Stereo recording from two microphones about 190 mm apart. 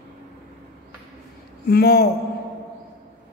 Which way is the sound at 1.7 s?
55° left (ahead or behind).